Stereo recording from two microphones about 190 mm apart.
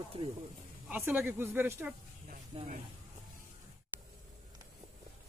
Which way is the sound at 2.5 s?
35° right (ahead or behind).